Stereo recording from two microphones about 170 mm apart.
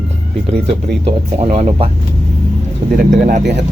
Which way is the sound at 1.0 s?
40° right (ahead or behind).